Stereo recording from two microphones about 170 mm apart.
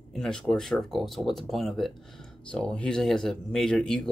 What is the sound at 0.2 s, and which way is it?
Speech, 5° left (ahead or behind).